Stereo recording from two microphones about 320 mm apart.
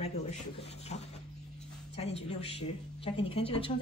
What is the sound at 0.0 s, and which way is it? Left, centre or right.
A woman's voice, centre.